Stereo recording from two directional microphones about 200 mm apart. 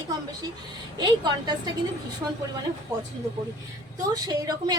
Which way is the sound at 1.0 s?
20° right (ahead or behind).